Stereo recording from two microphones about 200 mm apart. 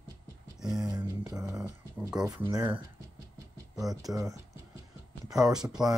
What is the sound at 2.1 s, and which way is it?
Speech, 20° right (ahead or behind).